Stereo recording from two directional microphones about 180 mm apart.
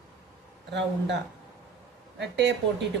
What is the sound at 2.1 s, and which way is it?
Speech, 75° right (ahead or behind).